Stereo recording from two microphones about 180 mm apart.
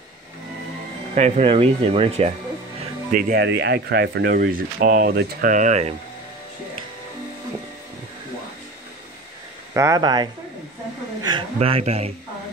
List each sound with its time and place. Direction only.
1.1 s speech: 40° right (ahead or behind)
3.1 s speech: 55° right (ahead or behind)
3.4 s speech: 70° right (ahead or behind); by 5.9 s 40° right (ahead or behind)
9.8 s speech: 20° right (ahead or behind); by 12.1 s 35° right (ahead or behind)